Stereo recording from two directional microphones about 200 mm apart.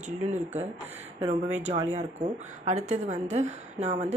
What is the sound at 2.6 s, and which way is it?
Speech, 35° right (ahead or behind).